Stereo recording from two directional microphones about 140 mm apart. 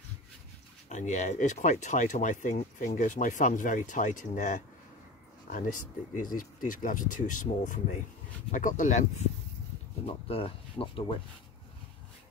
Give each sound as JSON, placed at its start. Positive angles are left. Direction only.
{"t": 0.8, "sound": "speech", "side_deg": 60}
{"t": 10.0, "sound": "speech", "side_deg": 45}